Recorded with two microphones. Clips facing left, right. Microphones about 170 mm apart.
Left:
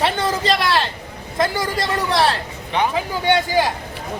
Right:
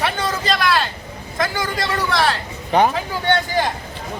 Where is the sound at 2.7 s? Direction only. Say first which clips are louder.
Right 5 dB; 45° right (ahead or behind).